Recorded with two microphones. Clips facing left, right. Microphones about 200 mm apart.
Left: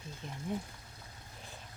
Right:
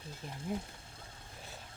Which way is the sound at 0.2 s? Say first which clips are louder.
Left 1 dB; 5° right (ahead or behind).